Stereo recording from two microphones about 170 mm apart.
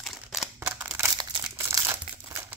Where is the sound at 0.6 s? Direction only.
15° right (ahead or behind).